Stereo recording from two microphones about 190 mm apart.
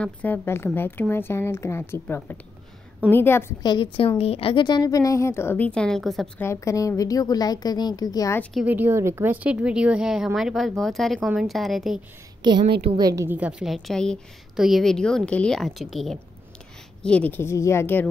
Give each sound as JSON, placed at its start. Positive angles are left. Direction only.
{"t": 0.0, "sound": "a woman's voice", "side_deg": 10}
{"t": 8.6, "sound": "a woman's voice", "side_deg": -10}
{"t": 12.4, "sound": "a woman's voice", "side_deg": -25}